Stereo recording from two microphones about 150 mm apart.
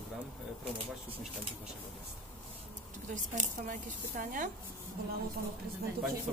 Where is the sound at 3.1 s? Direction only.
60° right (ahead or behind).